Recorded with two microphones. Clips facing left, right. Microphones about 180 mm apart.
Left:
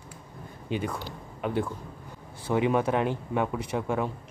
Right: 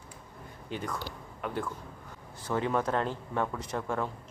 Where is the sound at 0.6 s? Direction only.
15° left (ahead or behind).